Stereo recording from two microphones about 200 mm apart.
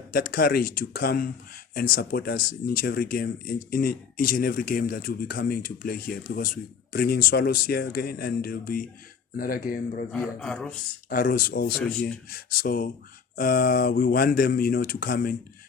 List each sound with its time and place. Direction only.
0.1 s speech: 45° left (ahead or behind)
10.1 s speech: 5° left (ahead or behind)
11.1 s speech: 45° left (ahead or behind)
11.8 s speech: 5° left (ahead or behind)
12.3 s speech: 45° left (ahead or behind)